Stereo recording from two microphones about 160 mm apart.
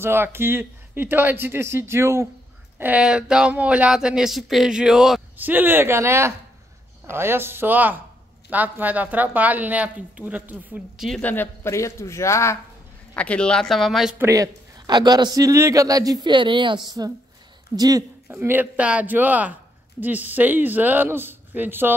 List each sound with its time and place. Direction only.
0.0 s speech: 15° right (ahead or behind)
11.1 s a man's voice: 10° left (ahead or behind)
14.1 s a man's voice: 20° right (ahead or behind)